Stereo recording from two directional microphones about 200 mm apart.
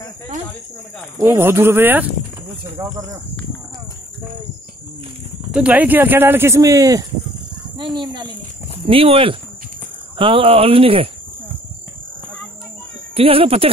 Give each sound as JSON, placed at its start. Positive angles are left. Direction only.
{"t": 1.2, "sound": "speech", "side_deg": -10}
{"t": 5.5, "sound": "speech", "side_deg": -5}
{"t": 13.1, "sound": "speech", "side_deg": -25}